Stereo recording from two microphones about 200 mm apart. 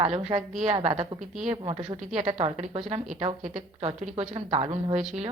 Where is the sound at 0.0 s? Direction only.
30° right (ahead or behind).